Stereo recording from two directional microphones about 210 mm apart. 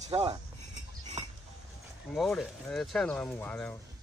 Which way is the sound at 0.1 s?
25° right (ahead or behind).